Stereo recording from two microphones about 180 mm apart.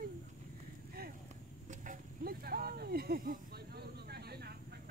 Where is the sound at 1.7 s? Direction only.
50° right (ahead or behind).